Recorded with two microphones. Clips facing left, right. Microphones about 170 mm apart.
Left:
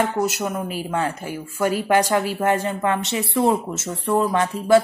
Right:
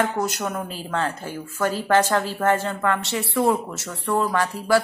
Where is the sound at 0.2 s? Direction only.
10° left (ahead or behind).